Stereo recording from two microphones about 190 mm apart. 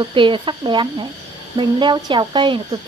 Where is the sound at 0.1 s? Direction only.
25° right (ahead or behind).